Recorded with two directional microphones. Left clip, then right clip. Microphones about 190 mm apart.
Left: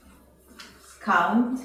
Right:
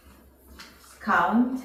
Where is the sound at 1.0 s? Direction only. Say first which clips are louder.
Left 2 dB; 5° left (ahead or behind).